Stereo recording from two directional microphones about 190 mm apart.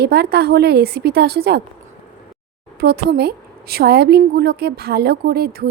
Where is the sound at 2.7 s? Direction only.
60° right (ahead or behind).